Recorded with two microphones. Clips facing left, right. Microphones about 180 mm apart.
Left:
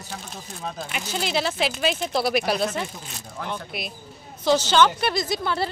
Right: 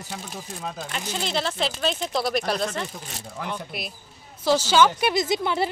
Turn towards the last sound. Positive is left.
turn(degrees=-20)  # may be behind; listen again after turning